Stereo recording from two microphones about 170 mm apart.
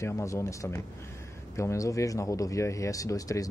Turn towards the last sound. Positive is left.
turn(degrees=20)  # may be behind; listen again after turning